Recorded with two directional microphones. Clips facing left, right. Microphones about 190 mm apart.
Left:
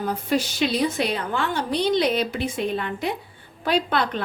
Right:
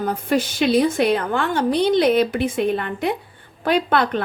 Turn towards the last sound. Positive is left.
turn(degrees=-55)  # may be behind; listen again after turning